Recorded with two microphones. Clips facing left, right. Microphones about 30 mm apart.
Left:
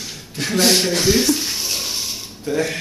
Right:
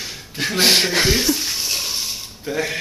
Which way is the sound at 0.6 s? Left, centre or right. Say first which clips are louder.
Even; right.